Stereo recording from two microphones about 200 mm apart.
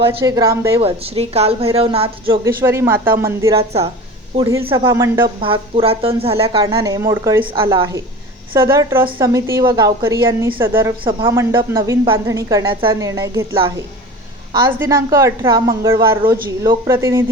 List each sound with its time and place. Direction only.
0.0 s a woman's voice: 25° right (ahead or behind)
0.8 s a woman's voice: 30° right (ahead or behind)
2.6 s a woman's voice: 15° right (ahead or behind)
4.9 s a woman's voice: 15° right (ahead or behind)
5.4 s a woman's voice: 25° right (ahead or behind)
6.7 s a woman's voice: 15° right (ahead or behind)
8.5 s a woman's voice: 15° right (ahead or behind)
11.0 s a woman's voice: 25° right (ahead or behind)
14.7 s a woman's voice: 15° right (ahead or behind)